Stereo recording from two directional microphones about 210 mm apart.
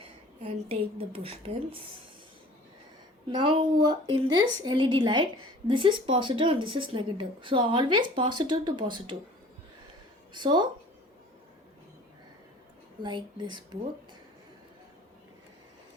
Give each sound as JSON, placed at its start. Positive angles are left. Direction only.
{"t": 0.4, "sound": "a woman's voice", "side_deg": -25}
{"t": 3.2, "sound": "a woman's voice", "side_deg": -25}
{"t": 10.3, "sound": "a woman's voice", "side_deg": -20}
{"t": 13.0, "sound": "a woman's voice", "side_deg": -20}